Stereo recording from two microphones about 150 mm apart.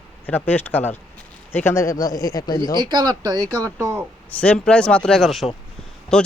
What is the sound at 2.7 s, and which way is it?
Speech, 30° right (ahead or behind).